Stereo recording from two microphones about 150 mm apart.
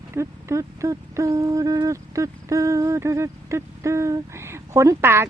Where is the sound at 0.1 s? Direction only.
20° right (ahead or behind).